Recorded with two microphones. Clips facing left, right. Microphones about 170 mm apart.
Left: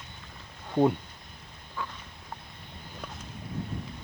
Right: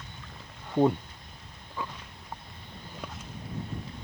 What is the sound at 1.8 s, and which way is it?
Walk, 15° right (ahead or behind).